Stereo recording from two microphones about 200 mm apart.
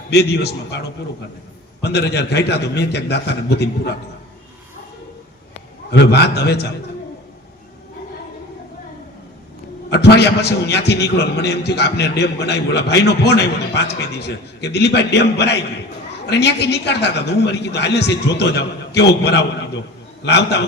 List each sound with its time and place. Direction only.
0.1 s a man's voice: 55° left (ahead or behind)
1.8 s a man's voice: 55° left (ahead or behind)
5.9 s a man's voice: 55° left (ahead or behind)
9.9 s a man's voice: 55° left (ahead or behind)